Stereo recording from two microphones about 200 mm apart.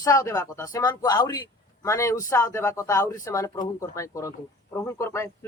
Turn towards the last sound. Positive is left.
turn(degrees=10)  # may be behind; listen again after turning